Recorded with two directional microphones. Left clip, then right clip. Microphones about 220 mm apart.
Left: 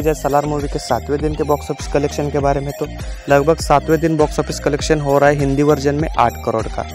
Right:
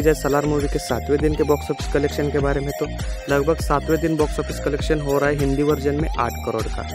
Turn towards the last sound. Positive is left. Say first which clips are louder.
# left 6 dB
turn(degrees=30)  # may be behind; listen again after turning